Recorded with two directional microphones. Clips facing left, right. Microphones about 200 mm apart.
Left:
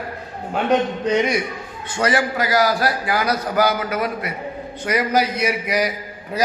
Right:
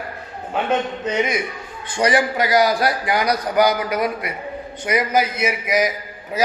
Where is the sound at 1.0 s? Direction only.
10° right (ahead or behind).